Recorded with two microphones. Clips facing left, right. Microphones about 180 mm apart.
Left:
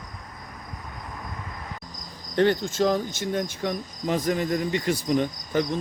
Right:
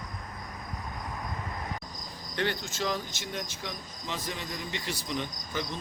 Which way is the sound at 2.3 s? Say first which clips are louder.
Left 11 dB; 45° left (ahead or behind).